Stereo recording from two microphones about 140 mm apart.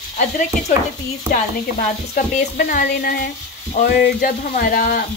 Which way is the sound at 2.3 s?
85° left.